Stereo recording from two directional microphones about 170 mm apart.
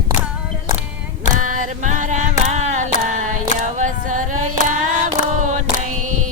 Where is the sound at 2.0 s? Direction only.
45° right (ahead or behind).